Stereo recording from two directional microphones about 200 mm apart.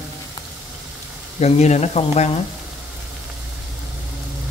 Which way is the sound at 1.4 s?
35° left (ahead or behind).